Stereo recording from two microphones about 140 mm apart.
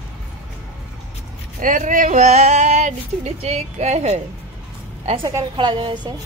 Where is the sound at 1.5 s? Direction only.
70° right (ahead or behind); by 4.1 s 50° right (ahead or behind).